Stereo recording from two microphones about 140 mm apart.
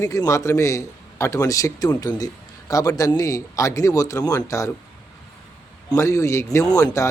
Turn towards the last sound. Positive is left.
turn(degrees=25)  # may be behind; listen again after turning